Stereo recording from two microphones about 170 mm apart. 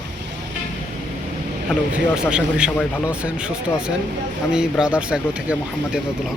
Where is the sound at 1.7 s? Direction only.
5° right (ahead or behind).